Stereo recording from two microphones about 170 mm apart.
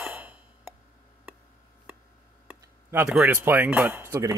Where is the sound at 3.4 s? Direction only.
10° right (ahead or behind).